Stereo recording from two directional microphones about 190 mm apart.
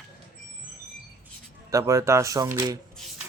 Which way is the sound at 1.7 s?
15° right (ahead or behind).